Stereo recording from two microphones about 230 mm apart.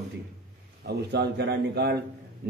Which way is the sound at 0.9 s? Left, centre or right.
Right.